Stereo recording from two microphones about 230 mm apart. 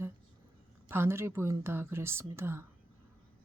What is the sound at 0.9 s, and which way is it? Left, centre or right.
Speech, centre.